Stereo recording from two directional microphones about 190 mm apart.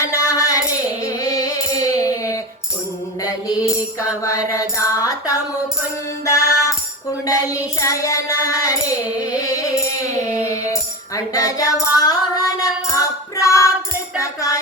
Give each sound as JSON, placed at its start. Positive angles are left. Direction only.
{"t": 0.0, "sound": "music", "side_deg": 15}
{"t": 4.2, "sound": "child singing", "side_deg": 15}
{"t": 6.2, "sound": "music", "side_deg": 15}
{"t": 7.3, "sound": "child singing", "side_deg": 15}
{"t": 9.4, "sound": "music", "side_deg": 20}